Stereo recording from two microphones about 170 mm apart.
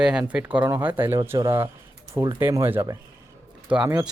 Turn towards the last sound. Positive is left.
turn(degrees=-5)  # may be behind; listen again after turning